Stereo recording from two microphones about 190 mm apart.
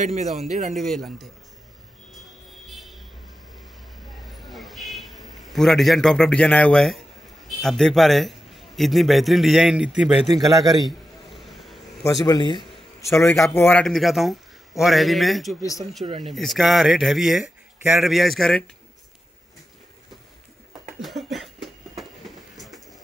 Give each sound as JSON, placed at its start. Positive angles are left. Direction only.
{"t": 0.0, "sound": "speech", "side_deg": -40}
{"t": 0.7, "sound": "a man's voice", "side_deg": 0}
{"t": 4.3, "sound": "a sound", "side_deg": 0}
{"t": 7.4, "sound": "a man's voice", "side_deg": 5}
{"t": 11.3, "sound": "vehicle", "side_deg": 0}
{"t": 12.3, "sound": "a man's voice", "side_deg": 25}
{"t": 21.0, "sound": "a sound", "side_deg": 0}